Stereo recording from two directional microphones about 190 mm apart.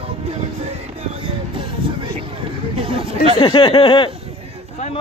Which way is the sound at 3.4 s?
25° left (ahead or behind).